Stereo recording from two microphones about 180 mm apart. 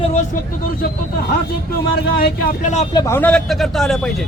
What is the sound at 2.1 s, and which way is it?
Speech, 55° left (ahead or behind).